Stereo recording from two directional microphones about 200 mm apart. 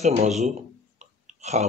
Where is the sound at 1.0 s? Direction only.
35° right (ahead or behind).